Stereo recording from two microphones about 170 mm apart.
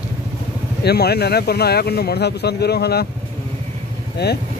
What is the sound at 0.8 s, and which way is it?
Speech, 70° left (ahead or behind).